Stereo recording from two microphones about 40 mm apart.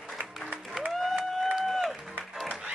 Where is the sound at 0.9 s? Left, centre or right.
Centre.